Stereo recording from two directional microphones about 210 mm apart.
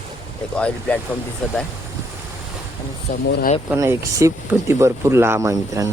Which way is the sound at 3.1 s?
30° left (ahead or behind).